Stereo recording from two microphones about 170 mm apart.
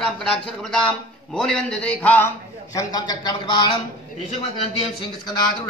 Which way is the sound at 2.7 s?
20° left (ahead or behind).